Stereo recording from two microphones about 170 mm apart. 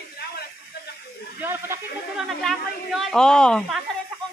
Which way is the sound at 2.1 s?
Centre (ahead or behind).